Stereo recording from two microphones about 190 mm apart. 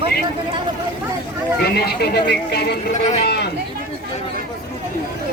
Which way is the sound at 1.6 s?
55° left (ahead or behind).